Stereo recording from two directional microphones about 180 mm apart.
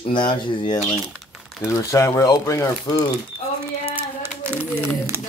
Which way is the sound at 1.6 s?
15° left (ahead or behind).